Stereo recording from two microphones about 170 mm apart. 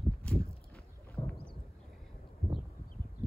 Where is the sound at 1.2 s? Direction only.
20° left (ahead or behind).